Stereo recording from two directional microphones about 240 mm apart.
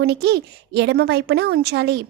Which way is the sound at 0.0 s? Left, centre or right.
Right.